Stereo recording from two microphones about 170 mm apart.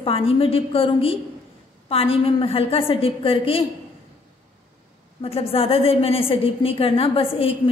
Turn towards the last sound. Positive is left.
turn(degrees=35)  # may be behind; listen again after turning